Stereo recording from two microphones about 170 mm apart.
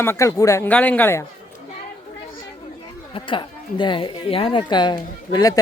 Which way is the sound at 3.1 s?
30° left (ahead or behind).